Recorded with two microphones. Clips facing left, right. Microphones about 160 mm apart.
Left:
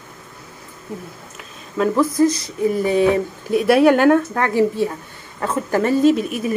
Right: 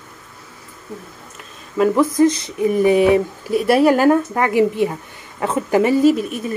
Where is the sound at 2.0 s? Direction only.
20° right (ahead or behind).